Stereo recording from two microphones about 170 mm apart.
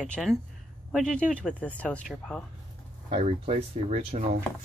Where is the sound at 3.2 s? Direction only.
40° right (ahead or behind).